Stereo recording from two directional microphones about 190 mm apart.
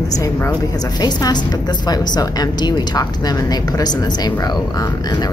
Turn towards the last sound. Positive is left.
turn(degrees=20)  # may be behind; listen again after turning